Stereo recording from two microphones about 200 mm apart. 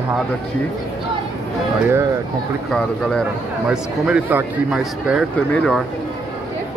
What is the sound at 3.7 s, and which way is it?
Speech, 5° right (ahead or behind).